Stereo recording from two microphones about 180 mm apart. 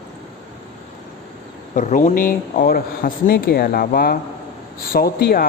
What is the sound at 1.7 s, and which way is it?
Speech, 45° left (ahead or behind).